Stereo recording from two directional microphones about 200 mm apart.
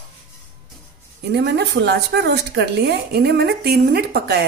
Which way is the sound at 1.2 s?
55° right (ahead or behind).